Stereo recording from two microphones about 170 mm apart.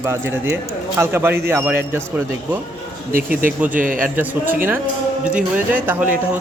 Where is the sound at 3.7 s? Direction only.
50° right (ahead or behind).